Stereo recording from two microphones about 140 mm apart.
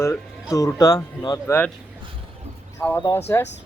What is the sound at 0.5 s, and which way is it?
Speech, 25° left (ahead or behind).